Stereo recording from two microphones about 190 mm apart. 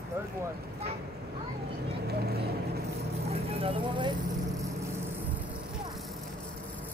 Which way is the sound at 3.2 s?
30° right (ahead or behind).